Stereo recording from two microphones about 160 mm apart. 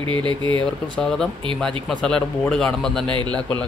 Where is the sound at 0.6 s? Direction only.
5° left (ahead or behind).